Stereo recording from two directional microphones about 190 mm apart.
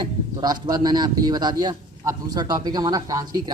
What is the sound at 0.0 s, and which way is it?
A man's voice, 20° right (ahead or behind).